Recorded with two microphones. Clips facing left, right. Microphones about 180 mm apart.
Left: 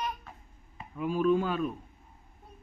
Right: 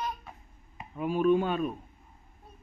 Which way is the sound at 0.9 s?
25° right (ahead or behind).